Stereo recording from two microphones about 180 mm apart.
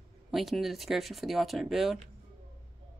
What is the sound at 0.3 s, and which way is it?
Speech, centre (ahead or behind).